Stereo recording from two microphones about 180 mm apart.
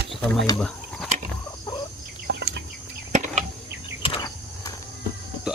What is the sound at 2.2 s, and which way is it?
Bird, 65° right (ahead or behind).